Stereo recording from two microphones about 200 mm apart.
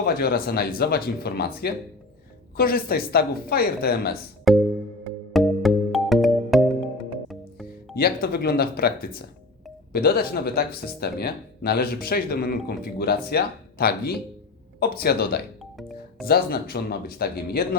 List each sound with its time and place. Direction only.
0.0 s speech: 50° left (ahead or behind)
4.5 s music: centre (ahead or behind)
7.9 s speech: 50° left (ahead or behind)